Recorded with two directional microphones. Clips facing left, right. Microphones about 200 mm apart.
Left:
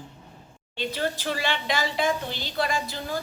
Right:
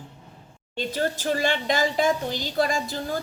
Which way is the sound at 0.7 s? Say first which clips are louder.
Right 2 dB; 45° right (ahead or behind).